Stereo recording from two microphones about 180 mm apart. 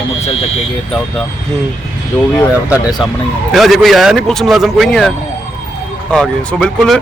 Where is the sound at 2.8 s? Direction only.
20° left (ahead or behind).